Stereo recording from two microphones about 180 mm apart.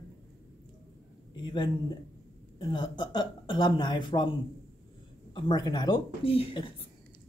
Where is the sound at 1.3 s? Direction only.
25° left (ahead or behind).